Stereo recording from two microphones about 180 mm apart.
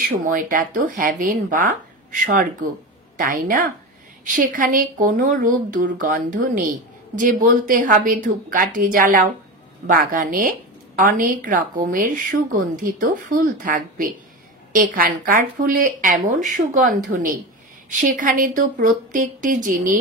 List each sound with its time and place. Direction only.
0.2 s speech: 50° right (ahead or behind)